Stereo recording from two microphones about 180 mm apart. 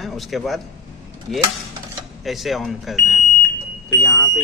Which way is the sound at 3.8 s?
15° left (ahead or behind).